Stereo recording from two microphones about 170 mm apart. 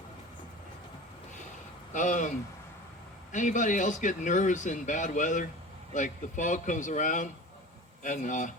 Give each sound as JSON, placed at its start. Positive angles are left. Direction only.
{"t": 1.9, "sound": "speech", "side_deg": 45}
{"t": 3.3, "sound": "speech", "side_deg": 45}